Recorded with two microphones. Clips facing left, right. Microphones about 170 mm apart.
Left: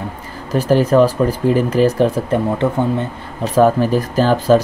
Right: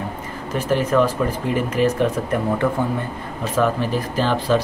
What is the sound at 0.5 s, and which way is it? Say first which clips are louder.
Speech: left 6 dB; 35° left (ahead or behind).